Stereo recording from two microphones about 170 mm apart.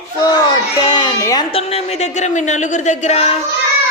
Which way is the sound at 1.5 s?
40° left (ahead or behind).